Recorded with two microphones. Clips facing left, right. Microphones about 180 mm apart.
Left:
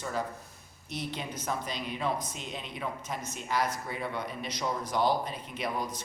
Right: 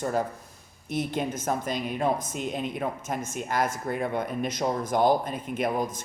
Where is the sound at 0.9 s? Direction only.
50° right (ahead or behind).